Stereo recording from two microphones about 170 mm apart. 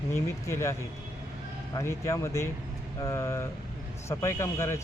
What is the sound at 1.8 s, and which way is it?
Speech, 20° left (ahead or behind).